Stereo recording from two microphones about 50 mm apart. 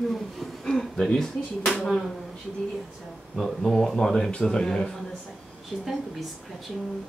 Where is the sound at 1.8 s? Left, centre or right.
Centre.